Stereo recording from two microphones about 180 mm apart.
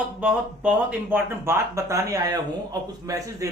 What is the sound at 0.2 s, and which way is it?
Speech, 10° right (ahead or behind).